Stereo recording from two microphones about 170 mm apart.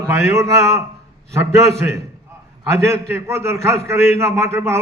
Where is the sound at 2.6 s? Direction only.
15° right (ahead or behind).